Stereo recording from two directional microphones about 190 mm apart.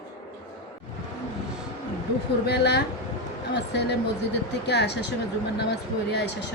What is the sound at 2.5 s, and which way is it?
Speech, 60° left (ahead or behind).